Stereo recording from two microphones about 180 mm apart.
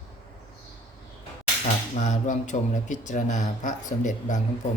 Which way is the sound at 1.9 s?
40° left (ahead or behind).